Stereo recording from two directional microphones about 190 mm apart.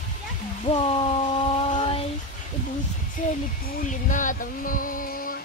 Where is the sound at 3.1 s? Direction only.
45° left (ahead or behind).